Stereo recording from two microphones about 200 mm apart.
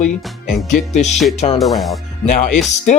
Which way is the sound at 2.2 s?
40° left (ahead or behind).